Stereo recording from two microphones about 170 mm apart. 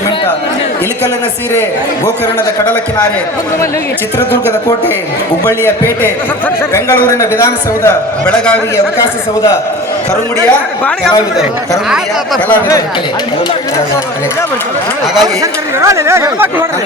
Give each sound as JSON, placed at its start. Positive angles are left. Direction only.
{"t": 4.2, "sound": "a man's voice", "side_deg": 15}
{"t": 15.2, "sound": "speech", "side_deg": -20}